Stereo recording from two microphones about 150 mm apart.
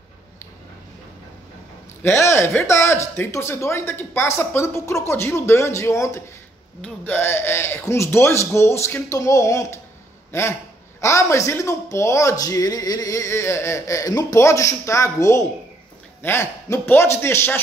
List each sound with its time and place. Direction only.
2.0 s speech: 20° left (ahead or behind)